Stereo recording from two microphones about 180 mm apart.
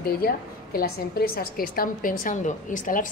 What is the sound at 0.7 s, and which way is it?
A woman's voice, 55° left (ahead or behind).